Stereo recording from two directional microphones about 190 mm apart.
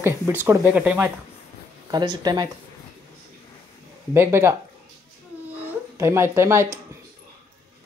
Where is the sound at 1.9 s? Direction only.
20° right (ahead or behind).